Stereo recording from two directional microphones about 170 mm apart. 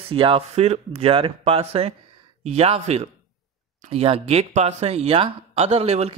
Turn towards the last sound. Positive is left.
turn(degrees=-35)  # may be behind; listen again after turning